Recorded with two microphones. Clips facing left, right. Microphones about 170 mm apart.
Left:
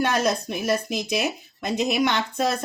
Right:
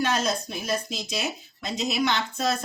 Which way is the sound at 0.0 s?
60° left (ahead or behind).